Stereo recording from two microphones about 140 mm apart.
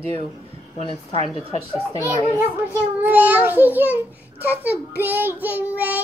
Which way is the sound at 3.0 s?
10° right (ahead or behind).